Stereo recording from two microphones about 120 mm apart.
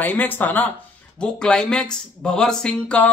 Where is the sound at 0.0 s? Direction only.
15° left (ahead or behind).